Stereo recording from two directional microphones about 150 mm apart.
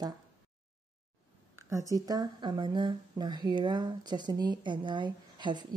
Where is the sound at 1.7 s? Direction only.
20° right (ahead or behind).